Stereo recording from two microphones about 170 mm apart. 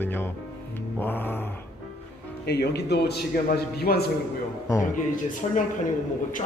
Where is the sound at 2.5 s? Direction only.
75° left (ahead or behind).